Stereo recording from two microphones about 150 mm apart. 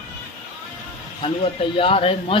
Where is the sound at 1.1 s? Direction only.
40° left (ahead or behind).